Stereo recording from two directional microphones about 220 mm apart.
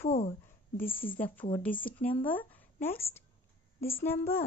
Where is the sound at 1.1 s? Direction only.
5° left (ahead or behind).